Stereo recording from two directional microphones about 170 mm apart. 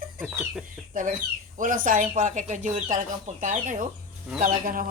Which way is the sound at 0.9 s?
50° right (ahead or behind).